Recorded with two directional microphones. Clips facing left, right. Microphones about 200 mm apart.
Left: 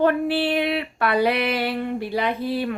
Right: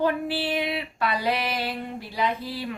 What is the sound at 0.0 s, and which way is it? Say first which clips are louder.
Female singing: left 5 dB; 60° left (ahead or behind).